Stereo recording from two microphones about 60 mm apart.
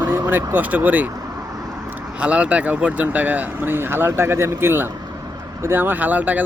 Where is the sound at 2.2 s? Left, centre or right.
Right.